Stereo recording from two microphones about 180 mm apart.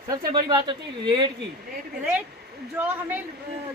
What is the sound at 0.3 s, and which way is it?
Speech, 25° right (ahead or behind).